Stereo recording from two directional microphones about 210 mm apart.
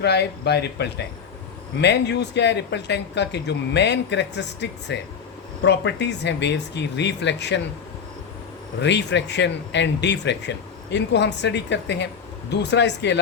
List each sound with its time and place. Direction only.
0.0 s speech: 50° left (ahead or behind)
8.8 s speech: 55° left (ahead or behind)